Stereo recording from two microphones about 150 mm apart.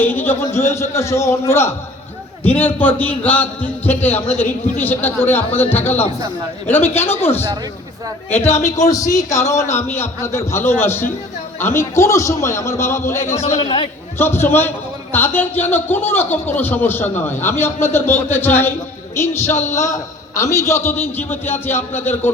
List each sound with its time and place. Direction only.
0.0 s a man's voice: 15° left (ahead or behind)
8.5 s a man's voice: 20° left (ahead or behind)
13.4 s a man's voice: 45° left (ahead or behind)
13.7 s a man's voice: 35° left (ahead or behind)
14.2 s a man's voice: 15° left (ahead or behind)